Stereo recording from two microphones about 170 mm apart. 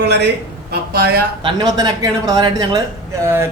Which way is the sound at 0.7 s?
65° right (ahead or behind).